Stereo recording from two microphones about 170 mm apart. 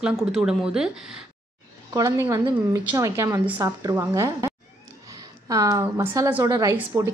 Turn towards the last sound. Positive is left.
turn(degrees=-15)  # may be behind; listen again after turning